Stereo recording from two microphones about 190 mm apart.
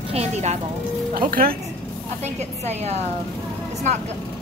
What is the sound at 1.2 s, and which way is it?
Speech, 50° right (ahead or behind).